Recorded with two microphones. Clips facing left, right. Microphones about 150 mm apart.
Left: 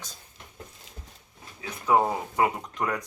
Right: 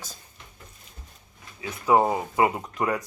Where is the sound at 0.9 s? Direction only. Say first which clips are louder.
Left 3 dB; 90° left.